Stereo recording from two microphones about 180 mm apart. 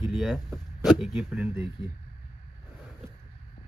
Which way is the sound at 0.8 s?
Centre (ahead or behind).